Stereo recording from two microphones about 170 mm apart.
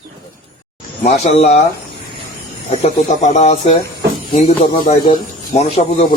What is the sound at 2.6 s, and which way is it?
Speech, 40° left (ahead or behind).